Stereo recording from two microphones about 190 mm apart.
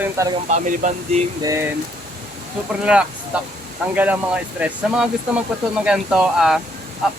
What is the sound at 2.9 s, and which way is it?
Speech, 5° right (ahead or behind).